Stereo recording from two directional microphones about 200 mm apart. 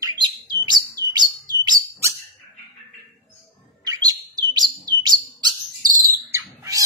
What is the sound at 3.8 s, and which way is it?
Bird, 20° right (ahead or behind).